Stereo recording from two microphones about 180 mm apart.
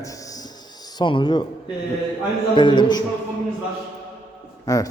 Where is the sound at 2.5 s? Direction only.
25° left (ahead or behind).